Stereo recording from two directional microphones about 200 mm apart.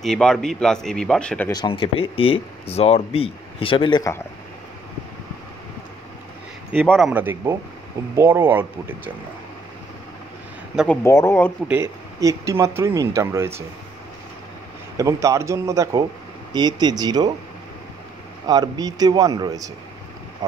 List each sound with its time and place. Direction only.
0.0 s speech: centre (ahead or behind)
1.5 s speech: 25° left (ahead or behind)
6.7 s speech: centre (ahead or behind)
11.1 s speech: 15° left (ahead or behind)
11.6 s speech: 10° right (ahead or behind)
15.0 s a man's voice: 15° right (ahead or behind)
18.5 s a man's voice: 20° right (ahead or behind)